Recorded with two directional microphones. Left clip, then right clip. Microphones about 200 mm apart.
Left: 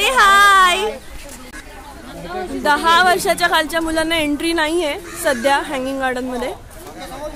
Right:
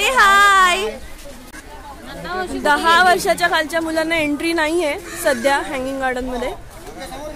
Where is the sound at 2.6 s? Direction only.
Centre (ahead or behind).